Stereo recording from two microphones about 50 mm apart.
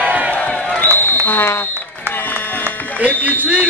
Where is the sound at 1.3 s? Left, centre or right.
Left.